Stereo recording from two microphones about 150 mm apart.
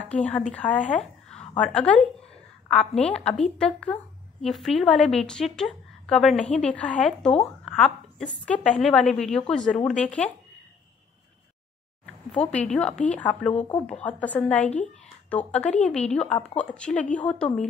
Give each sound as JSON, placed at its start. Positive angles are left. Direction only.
{"t": 0.0, "sound": "a woman's voice", "side_deg": 10}
{"t": 7.6, "sound": "a sound", "side_deg": 5}
{"t": 8.5, "sound": "a woman's voice", "side_deg": 5}
{"t": 12.3, "sound": "a woman's voice", "side_deg": 5}